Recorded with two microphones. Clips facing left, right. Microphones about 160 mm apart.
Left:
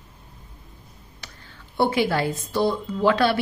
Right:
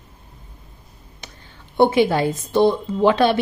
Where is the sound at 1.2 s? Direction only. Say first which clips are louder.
Right 3 dB; 20° right (ahead or behind).